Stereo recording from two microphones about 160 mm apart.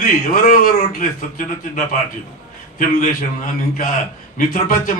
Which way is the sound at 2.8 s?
55° left (ahead or behind).